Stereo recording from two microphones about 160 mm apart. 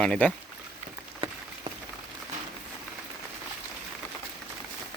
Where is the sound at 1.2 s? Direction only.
35° right (ahead or behind).